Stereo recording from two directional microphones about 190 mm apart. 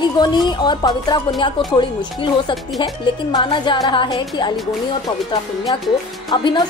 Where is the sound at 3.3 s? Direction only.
25° left (ahead or behind).